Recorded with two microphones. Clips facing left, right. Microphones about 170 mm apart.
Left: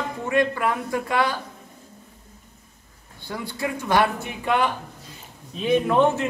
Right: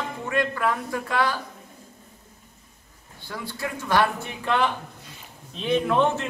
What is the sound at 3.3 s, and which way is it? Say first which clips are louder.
Speech: left 4 dB; 15° left (ahead or behind).